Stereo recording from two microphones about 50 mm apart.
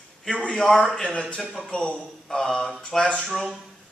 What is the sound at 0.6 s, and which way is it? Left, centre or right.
Speech, centre.